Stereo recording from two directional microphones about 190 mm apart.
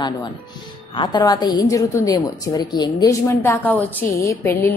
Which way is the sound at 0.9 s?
25° left (ahead or behind).